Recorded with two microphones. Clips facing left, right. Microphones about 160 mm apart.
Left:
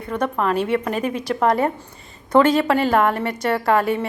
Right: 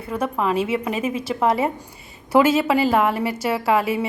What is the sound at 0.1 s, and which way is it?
A woman's voice, 5° right (ahead or behind).